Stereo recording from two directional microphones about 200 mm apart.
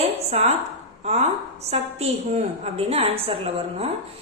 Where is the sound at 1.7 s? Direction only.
30° right (ahead or behind).